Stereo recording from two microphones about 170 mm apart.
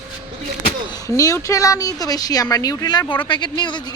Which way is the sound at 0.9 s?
20° left (ahead or behind).